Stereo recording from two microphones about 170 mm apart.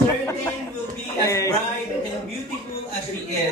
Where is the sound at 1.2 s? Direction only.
20° left (ahead or behind).